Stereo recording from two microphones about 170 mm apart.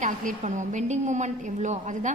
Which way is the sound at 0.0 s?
50° right (ahead or behind).